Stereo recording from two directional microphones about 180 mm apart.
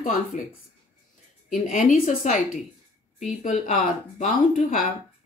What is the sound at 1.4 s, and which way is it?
Speech, 45° left (ahead or behind).